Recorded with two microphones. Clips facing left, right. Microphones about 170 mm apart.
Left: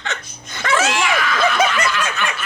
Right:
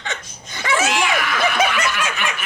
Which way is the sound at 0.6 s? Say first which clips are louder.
Left 1 dB; 15° right (ahead or behind).